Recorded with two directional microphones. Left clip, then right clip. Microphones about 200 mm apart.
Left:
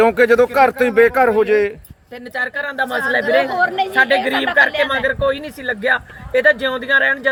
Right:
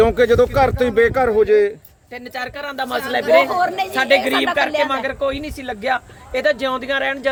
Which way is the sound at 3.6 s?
50° right (ahead or behind).